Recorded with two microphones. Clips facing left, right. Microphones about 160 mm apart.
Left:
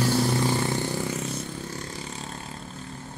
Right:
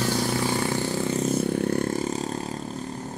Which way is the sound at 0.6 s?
15° right (ahead or behind).